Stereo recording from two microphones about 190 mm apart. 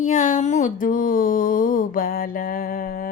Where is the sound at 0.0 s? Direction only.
40° left (ahead or behind).